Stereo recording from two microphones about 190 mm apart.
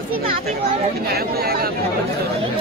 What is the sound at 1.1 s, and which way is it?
Speech, 55° right (ahead or behind).